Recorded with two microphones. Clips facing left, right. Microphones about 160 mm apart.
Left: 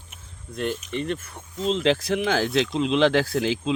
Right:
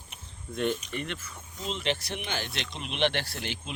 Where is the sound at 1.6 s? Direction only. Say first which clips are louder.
Left 12 dB; 90° left.